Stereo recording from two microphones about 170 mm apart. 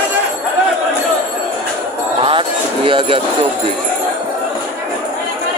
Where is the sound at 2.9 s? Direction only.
30° right (ahead or behind).